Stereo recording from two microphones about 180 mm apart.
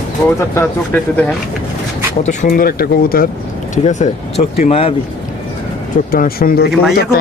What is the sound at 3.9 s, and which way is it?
Speech, 40° left (ahead or behind).